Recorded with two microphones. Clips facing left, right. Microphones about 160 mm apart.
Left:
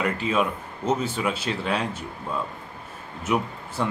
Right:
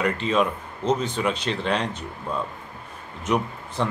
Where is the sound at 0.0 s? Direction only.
5° left (ahead or behind).